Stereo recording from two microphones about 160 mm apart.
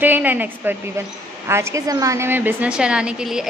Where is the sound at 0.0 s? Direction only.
10° right (ahead or behind).